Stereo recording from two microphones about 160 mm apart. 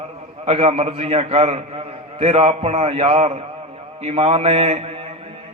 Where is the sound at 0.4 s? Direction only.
40° right (ahead or behind).